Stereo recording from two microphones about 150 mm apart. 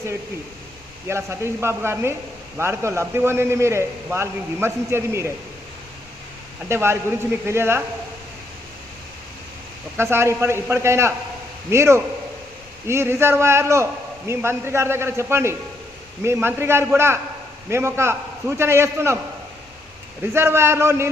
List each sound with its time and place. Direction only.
1.0 s a man's voice: 15° right (ahead or behind)
6.7 s a man's voice: 15° right (ahead or behind)
10.0 s a man's voice: 15° right (ahead or behind)
20.3 s a man's voice: 15° right (ahead or behind)